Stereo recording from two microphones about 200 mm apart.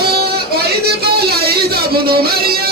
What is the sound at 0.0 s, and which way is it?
Music, 50° right (ahead or behind).